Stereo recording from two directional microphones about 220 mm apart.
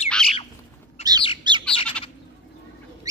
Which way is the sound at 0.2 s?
5° left (ahead or behind).